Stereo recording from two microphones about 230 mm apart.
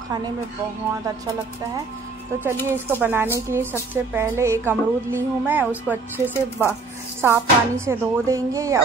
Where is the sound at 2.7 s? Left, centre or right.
Centre.